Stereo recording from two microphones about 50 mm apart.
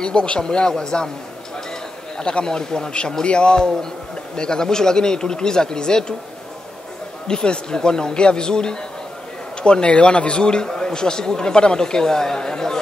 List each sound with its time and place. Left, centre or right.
0.0 s a man's voice: centre
2.1 s a man's voice: centre
7.2 s a man's voice: centre